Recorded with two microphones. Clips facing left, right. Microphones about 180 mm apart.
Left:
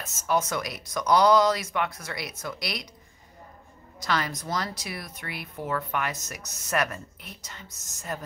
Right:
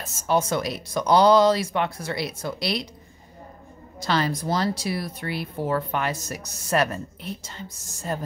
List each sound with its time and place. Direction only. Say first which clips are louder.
0.0 s speech: right 3 dB; 30° right (ahead or behind)
4.0 s speech: right 5 dB; 30° right (ahead or behind)